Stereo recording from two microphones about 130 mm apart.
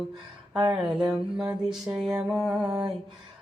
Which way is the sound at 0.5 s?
5° right (ahead or behind).